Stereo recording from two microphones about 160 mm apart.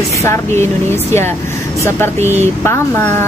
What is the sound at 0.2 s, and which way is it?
Speech, 15° left (ahead or behind).